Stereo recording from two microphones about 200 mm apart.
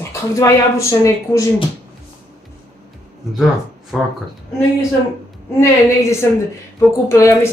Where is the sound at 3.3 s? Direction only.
Centre (ahead or behind).